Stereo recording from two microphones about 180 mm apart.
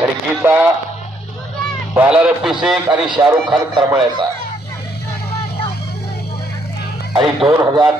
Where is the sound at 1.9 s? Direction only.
5° right (ahead or behind).